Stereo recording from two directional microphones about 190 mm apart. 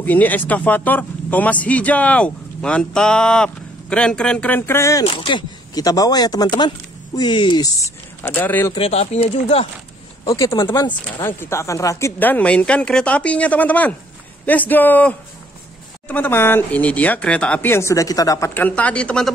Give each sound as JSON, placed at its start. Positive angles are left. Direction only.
{"t": 0.0, "sound": "speech", "side_deg": 10}
{"t": 5.0, "sound": "speech", "side_deg": 25}
{"t": 8.7, "sound": "speech", "side_deg": 30}
{"t": 10.3, "sound": "speech", "side_deg": 15}
{"t": 11.2, "sound": "speech", "side_deg": 10}